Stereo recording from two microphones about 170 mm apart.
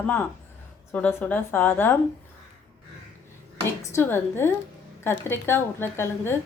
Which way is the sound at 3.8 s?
15° left (ahead or behind).